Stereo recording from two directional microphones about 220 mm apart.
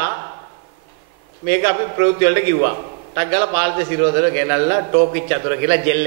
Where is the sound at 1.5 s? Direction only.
15° right (ahead or behind).